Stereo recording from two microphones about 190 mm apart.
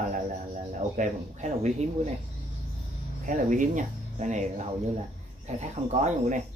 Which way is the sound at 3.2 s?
45° right (ahead or behind).